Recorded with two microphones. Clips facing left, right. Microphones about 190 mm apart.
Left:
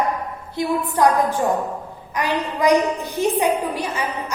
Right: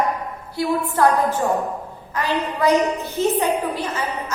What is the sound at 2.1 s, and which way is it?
A woman's voice, 15° left (ahead or behind).